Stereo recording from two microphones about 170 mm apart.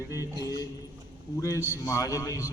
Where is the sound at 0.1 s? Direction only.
20° left (ahead or behind).